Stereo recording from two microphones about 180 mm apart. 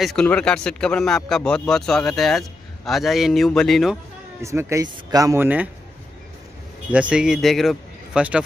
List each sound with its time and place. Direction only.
0.0 s speech: 5° left (ahead or behind)
4.4 s speech: 15° right (ahead or behind)
6.9 s a man's voice: 5° right (ahead or behind)